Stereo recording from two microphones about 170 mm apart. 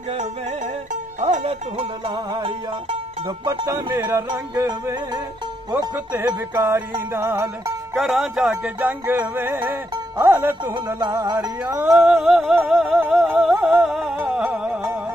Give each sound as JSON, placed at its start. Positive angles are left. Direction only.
{"t": 1.2, "sound": "music", "side_deg": -35}
{"t": 3.4, "sound": "speech", "side_deg": -15}
{"t": 5.7, "sound": "music", "side_deg": -20}
{"t": 7.9, "sound": "music", "side_deg": 0}